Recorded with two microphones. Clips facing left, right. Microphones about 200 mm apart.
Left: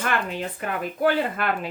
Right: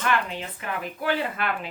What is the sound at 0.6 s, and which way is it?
Speech, 45° left (ahead or behind).